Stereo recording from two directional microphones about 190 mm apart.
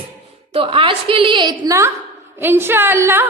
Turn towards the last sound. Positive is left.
turn(degrees=-10)  # may be behind; listen again after turning